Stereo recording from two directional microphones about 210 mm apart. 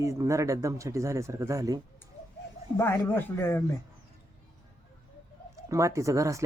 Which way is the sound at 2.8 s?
10° left (ahead or behind).